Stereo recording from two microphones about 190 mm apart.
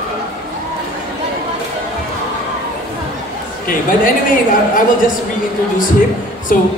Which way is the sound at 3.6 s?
45° left (ahead or behind).